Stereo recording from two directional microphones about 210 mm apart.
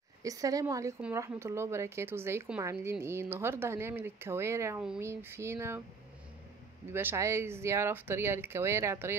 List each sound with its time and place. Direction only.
0.2 s speech: 15° right (ahead or behind)
6.9 s speech: 10° right (ahead or behind)